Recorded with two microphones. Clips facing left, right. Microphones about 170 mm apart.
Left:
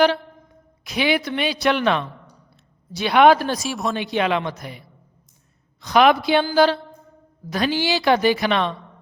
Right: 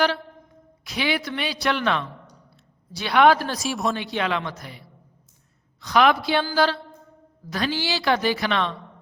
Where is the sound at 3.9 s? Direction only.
20° left (ahead or behind).